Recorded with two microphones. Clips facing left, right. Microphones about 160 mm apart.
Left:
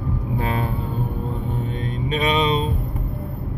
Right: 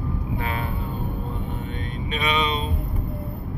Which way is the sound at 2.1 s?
35° left (ahead or behind).